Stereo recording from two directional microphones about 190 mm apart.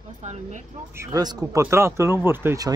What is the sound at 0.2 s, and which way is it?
Speech, 40° right (ahead or behind).